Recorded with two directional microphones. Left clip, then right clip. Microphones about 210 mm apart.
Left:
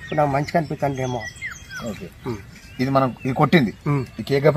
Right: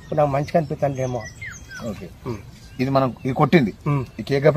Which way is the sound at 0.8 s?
5° left (ahead or behind).